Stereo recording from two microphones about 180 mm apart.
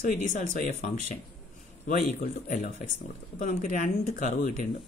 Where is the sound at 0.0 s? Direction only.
45° left (ahead or behind).